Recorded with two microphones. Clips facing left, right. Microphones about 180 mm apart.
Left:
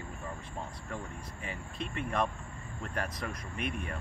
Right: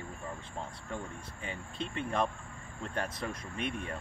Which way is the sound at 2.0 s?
30° right (ahead or behind).